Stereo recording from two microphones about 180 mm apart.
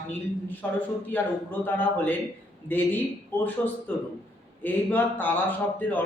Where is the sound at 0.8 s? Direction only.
10° left (ahead or behind).